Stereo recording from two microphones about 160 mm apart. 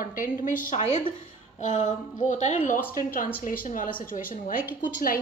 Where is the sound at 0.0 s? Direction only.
60° left (ahead or behind).